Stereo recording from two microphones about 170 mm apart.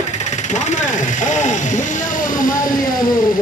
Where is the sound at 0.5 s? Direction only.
45° left (ahead or behind).